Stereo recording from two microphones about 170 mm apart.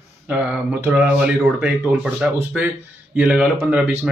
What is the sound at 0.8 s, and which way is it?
Speech, 5° right (ahead or behind).